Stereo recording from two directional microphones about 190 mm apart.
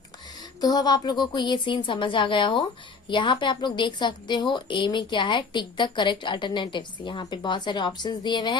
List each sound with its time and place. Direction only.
0.6 s a woman's voice: 20° left (ahead or behind)